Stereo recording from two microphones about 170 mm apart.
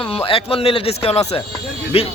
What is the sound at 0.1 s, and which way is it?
Speech, 35° left (ahead or behind).